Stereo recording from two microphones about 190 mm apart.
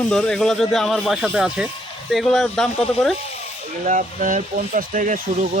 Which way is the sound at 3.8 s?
45° right (ahead or behind).